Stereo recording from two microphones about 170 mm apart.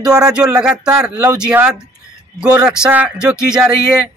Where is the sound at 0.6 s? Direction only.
5° right (ahead or behind).